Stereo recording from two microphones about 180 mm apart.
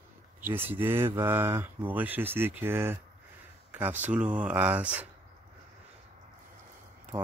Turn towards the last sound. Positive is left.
turn(degrees=-10)  # may be behind; listen again after turning